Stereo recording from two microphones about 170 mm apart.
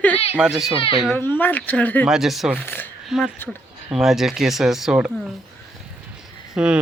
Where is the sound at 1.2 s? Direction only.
10° left (ahead or behind).